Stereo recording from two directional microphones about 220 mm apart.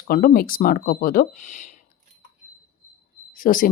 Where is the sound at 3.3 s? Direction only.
40° left (ahead or behind).